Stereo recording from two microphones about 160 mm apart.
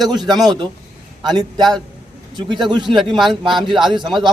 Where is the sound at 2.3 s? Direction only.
30° right (ahead or behind).